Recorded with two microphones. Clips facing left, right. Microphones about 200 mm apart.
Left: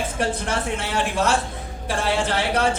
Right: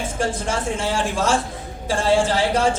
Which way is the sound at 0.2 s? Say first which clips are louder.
Right 2 dB; 60° left (ahead or behind).